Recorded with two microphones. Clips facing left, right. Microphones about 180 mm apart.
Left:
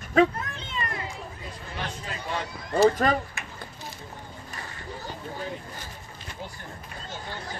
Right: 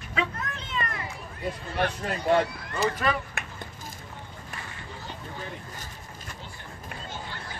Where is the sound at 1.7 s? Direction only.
60° right (ahead or behind).